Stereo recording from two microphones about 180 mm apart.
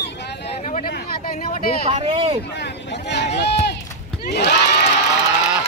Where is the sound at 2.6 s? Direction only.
70° left (ahead or behind).